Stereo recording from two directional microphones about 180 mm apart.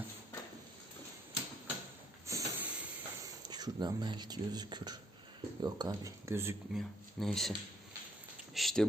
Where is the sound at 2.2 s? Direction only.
15° right (ahead or behind).